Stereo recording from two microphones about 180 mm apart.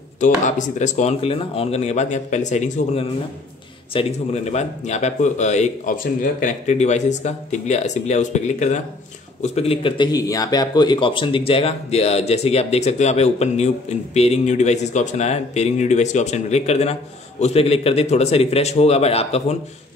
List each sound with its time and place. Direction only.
0.2 s speech: 45° left (ahead or behind)